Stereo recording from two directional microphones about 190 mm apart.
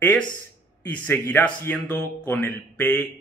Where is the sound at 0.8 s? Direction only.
10° left (ahead or behind).